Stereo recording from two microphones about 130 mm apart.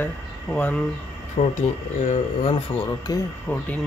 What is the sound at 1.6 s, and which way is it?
Speech, 65° left (ahead or behind).